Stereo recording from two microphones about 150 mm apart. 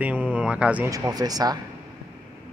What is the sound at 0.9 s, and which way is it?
Speech, 25° right (ahead or behind).